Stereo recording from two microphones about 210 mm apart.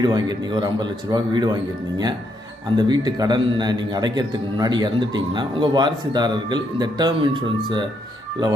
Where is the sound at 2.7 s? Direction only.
20° right (ahead or behind).